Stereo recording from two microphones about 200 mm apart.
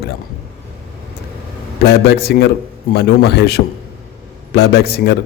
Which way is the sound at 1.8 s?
55° left (ahead or behind).